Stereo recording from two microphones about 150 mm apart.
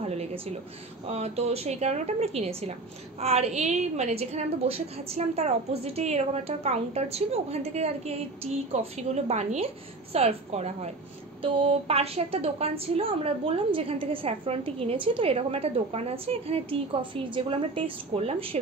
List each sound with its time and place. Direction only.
0.0 s a woman's voice: 45° right (ahead or behind)